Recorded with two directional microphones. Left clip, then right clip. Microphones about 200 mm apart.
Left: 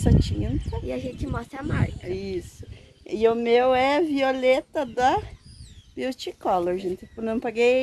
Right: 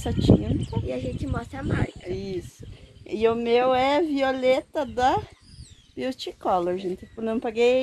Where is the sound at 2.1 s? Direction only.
5° right (ahead or behind).